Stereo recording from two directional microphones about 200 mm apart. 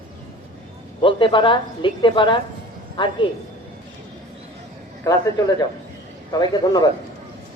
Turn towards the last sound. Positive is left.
turn(degrees=20)  # may be behind; listen again after turning